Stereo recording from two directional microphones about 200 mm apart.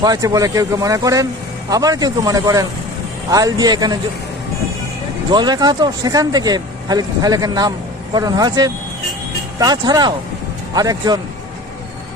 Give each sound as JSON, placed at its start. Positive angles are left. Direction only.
{"t": 0.0, "sound": "speech", "side_deg": -20}
{"t": 5.3, "sound": "speech", "side_deg": -20}